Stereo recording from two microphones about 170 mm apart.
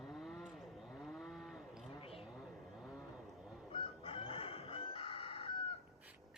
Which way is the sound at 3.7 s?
30° left (ahead or behind).